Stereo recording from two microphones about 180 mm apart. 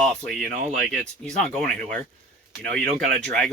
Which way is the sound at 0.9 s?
5° left (ahead or behind).